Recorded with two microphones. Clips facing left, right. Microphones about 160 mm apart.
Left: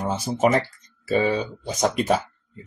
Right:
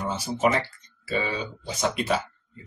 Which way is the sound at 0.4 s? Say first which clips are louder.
Left 4 dB; 40° left (ahead or behind).